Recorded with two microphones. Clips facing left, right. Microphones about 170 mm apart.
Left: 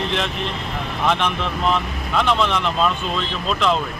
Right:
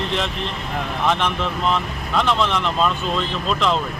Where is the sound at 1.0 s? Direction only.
Centre (ahead or behind).